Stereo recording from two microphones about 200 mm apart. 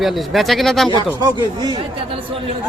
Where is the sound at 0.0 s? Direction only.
Centre (ahead or behind).